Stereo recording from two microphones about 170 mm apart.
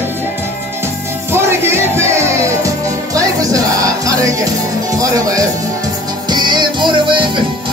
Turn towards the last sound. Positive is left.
turn(degrees=-30)  # may be behind; listen again after turning